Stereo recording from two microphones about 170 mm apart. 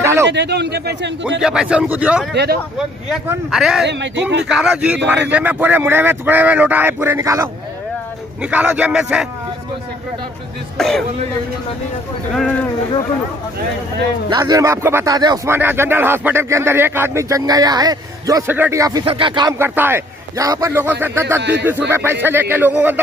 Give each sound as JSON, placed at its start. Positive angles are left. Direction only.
{"t": 0.0, "sound": "a sound", "side_deg": -15}
{"t": 0.3, "sound": "a man's voice", "side_deg": -85}
{"t": 1.4, "sound": "speech", "side_deg": -5}
{"t": 2.3, "sound": "speech", "side_deg": -70}
{"t": 3.5, "sound": "speech", "side_deg": -5}
{"t": 3.8, "sound": "speech", "side_deg": -90}
{"t": 4.5, "sound": "speech", "side_deg": -5}
{"t": 10.8, "sound": "speech", "side_deg": 0}
{"t": 14.3, "sound": "speech", "side_deg": -20}
{"t": 19.0, "sound": "speech", "side_deg": -30}
{"t": 19.6, "sound": "speech", "side_deg": -10}
{"t": 21.4, "sound": "speech", "side_deg": -90}
{"t": 21.6, "sound": "speech", "side_deg": -10}